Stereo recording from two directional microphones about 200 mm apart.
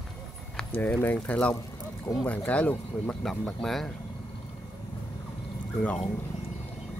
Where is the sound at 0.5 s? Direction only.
10° left (ahead or behind).